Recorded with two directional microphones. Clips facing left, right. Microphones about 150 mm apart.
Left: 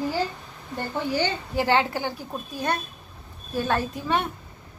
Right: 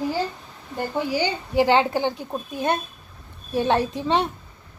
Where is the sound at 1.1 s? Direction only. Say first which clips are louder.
Right 2 dB; 15° right (ahead or behind).